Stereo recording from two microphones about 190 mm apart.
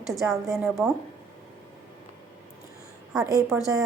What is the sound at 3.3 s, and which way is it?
Speech, 20° right (ahead or behind).